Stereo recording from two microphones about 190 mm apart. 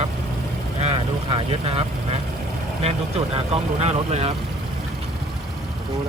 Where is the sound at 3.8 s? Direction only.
35° right (ahead or behind).